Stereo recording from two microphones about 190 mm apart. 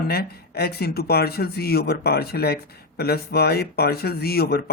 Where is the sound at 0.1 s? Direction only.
55° left (ahead or behind).